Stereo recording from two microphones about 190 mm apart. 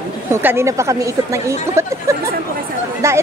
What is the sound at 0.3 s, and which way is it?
Speech, 10° right (ahead or behind).